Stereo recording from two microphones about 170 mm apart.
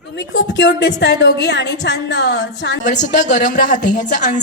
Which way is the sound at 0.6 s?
90° left.